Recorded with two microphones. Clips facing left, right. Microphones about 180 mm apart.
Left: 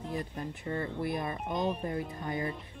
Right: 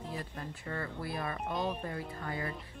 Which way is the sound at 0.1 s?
20° left (ahead or behind).